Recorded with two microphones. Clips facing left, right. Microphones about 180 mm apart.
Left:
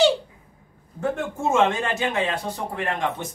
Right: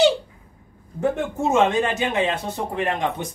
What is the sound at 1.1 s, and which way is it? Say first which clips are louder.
A man's voice: even; 20° right (ahead or behind).